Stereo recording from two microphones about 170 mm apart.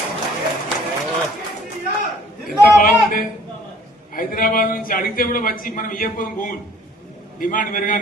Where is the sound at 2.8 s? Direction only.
55° left (ahead or behind).